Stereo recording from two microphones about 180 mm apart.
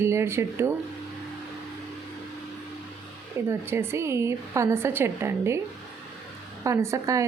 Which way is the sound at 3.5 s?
15° right (ahead or behind).